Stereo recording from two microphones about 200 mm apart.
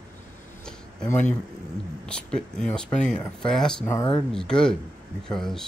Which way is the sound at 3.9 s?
15° left (ahead or behind).